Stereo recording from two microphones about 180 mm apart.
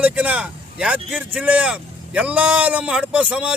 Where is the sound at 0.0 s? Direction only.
10° right (ahead or behind).